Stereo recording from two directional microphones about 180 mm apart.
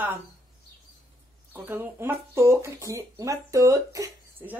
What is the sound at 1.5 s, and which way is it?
Speech, 10° right (ahead or behind).